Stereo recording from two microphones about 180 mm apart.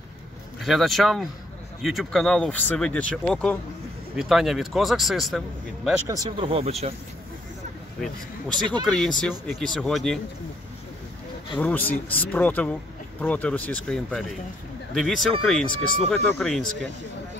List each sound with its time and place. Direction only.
0.6 s speech: centre (ahead or behind)
6.0 s speech: 20° right (ahead or behind)
8.8 s speech: centre (ahead or behind)
11.5 s speech: 10° left (ahead or behind)